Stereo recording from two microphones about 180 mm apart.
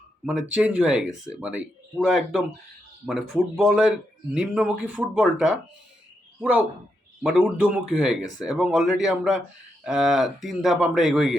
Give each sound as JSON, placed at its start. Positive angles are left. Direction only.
{"t": 0.3, "sound": "speech", "side_deg": -5}